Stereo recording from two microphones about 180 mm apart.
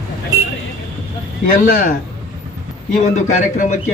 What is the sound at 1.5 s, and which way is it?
Speech, 45° left (ahead or behind).